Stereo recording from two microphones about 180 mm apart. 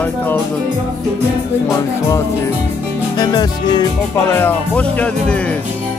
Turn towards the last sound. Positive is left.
turn(degrees=5)  # may be behind; listen again after turning